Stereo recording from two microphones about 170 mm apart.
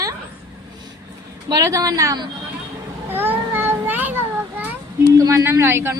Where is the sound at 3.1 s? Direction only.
10° right (ahead or behind).